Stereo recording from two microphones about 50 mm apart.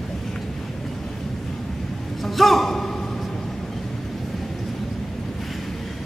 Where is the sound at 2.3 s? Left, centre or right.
Centre.